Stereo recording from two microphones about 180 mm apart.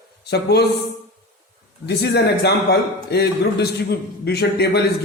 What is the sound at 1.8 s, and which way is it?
A man's voice, 70° left (ahead or behind).